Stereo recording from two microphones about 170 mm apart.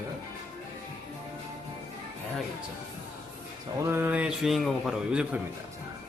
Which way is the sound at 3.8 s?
10° right (ahead or behind).